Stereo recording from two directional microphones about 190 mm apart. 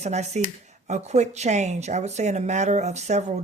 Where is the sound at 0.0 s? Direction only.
35° right (ahead or behind).